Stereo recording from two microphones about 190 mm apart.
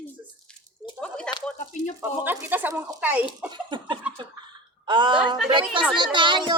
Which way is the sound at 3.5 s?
25° right (ahead or behind).